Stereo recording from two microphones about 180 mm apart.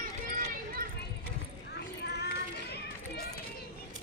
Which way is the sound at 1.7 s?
65° left (ahead or behind).